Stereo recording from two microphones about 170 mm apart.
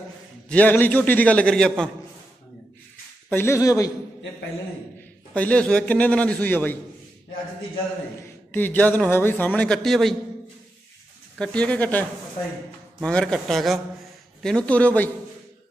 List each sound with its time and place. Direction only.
0.5 s a man's voice: 10° left (ahead or behind)
3.3 s a man's voice: 15° left (ahead or behind)
5.3 s a man's voice: 5° left (ahead or behind)
8.2 s a man's voice: 10° left (ahead or behind)
11.3 s a man's voice: 5° left (ahead or behind)